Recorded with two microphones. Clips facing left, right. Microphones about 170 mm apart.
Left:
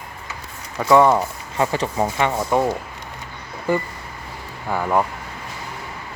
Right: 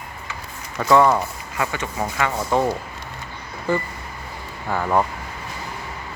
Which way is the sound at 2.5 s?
15° left (ahead or behind).